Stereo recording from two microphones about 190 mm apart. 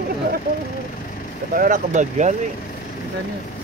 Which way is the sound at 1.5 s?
45° right (ahead or behind).